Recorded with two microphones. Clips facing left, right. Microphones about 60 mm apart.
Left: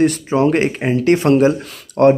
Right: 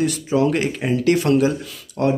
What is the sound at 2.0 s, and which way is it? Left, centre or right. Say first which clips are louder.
Speech: left 9 dB; left.